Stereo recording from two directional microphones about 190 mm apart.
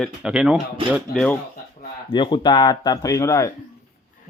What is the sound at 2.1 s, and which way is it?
Speech, 25° left (ahead or behind).